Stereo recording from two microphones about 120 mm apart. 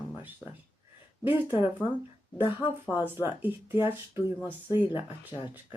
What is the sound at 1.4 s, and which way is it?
Speech, 40° left (ahead or behind).